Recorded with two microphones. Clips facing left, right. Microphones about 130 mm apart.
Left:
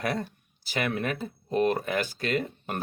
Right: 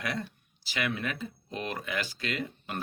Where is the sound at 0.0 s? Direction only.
45° left (ahead or behind).